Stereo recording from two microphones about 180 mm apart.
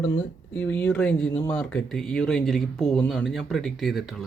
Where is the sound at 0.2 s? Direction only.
10° left (ahead or behind).